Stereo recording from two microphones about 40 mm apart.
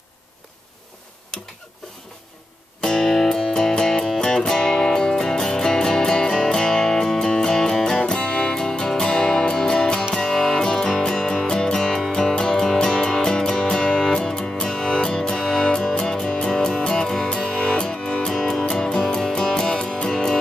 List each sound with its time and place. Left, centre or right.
2.8 s music: centre
8.0 s music: left